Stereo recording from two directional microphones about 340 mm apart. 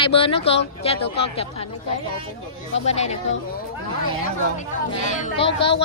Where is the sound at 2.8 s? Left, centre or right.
Centre.